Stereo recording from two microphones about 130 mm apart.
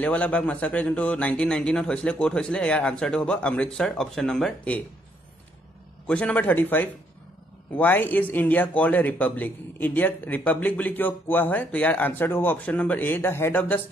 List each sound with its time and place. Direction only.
0.0 s speech: 10° left (ahead or behind)
6.0 s speech: 10° left (ahead or behind)